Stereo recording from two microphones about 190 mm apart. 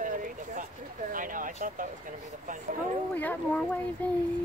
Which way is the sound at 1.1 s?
45° right (ahead or behind).